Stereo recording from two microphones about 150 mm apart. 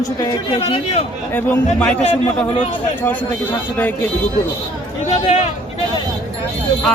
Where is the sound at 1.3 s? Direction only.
10° left (ahead or behind).